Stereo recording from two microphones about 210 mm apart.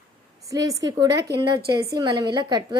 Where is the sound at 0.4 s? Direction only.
15° right (ahead or behind).